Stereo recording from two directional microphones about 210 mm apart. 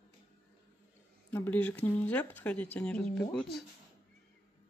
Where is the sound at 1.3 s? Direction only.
10° left (ahead or behind).